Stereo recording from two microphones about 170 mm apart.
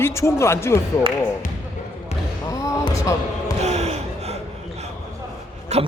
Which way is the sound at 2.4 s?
20° left (ahead or behind).